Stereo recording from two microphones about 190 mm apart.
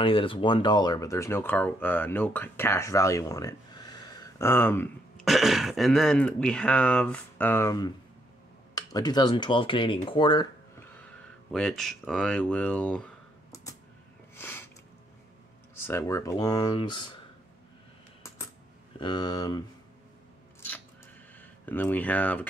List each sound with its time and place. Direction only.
0.0 s speech: 25° left (ahead or behind); by 4.8 s 10° left (ahead or behind)
5.2 s speech: centre (ahead or behind); by 10.9 s 20° left (ahead or behind)
11.0 s speech: 5° left (ahead or behind)
14.3 s a sound: 10° left (ahead or behind)
15.9 s speech: 15° left (ahead or behind)
18.9 s speech: 25° left (ahead or behind)
21.4 s speech: 10° left (ahead or behind)